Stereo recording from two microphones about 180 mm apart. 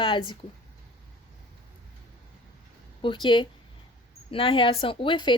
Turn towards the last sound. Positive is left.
turn(degrees=25)  # may be behind; listen again after turning